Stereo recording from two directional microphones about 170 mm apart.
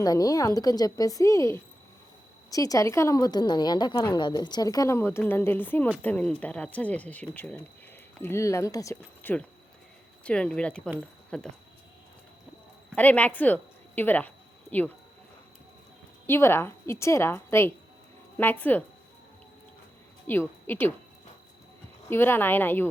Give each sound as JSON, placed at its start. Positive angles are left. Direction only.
{"t": 0.0, "sound": "a woman's voice", "side_deg": 20}
{"t": 13.0, "sound": "a woman's voice", "side_deg": 10}
{"t": 16.2, "sound": "speech", "side_deg": 15}
{"t": 20.2, "sound": "a woman's voice", "side_deg": 10}
{"t": 22.1, "sound": "speech", "side_deg": 15}